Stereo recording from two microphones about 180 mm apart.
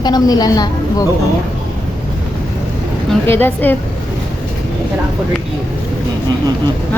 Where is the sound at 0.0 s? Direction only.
20° left (ahead or behind).